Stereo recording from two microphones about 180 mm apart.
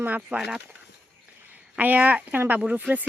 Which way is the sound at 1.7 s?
10° right (ahead or behind).